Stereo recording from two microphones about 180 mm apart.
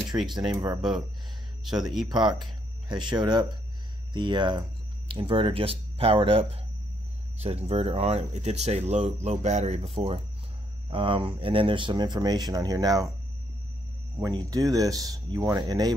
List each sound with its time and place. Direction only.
0.1 s speech: 15° right (ahead or behind)
2.0 s speech: 25° right (ahead or behind)
14.2 s speech: 20° right (ahead or behind)